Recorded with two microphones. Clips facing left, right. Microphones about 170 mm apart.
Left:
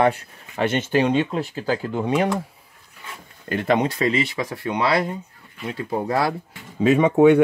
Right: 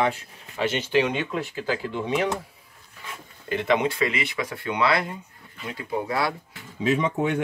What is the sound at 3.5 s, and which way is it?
Speech, 45° left (ahead or behind).